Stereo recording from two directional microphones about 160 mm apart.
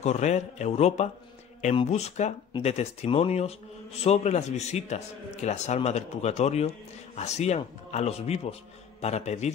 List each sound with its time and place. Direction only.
0.0 s a man's voice: 45° left (ahead or behind)